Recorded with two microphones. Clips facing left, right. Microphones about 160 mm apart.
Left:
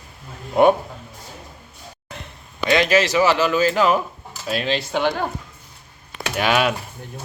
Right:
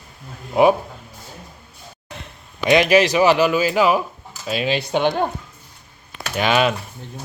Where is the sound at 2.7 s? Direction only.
15° right (ahead or behind); by 4.7 s centre (ahead or behind).